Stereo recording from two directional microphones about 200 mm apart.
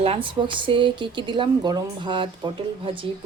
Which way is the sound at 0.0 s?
25° right (ahead or behind).